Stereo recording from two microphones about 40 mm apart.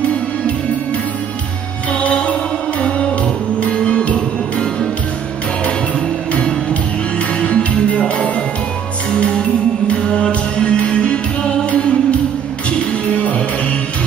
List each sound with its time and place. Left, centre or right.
1.9 s music: left
3.5 s music: left
6.3 s music: left
13.1 s music: left